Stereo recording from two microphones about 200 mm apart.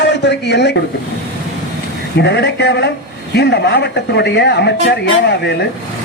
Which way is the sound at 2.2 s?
60° left (ahead or behind).